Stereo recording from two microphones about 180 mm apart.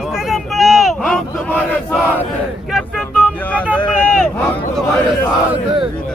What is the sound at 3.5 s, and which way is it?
Vehicle, 10° left (ahead or behind).